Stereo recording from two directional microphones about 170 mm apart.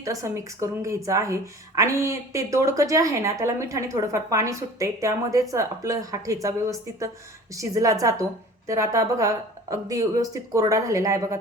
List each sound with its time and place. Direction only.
0.0 s a woman's voice: 20° right (ahead or behind)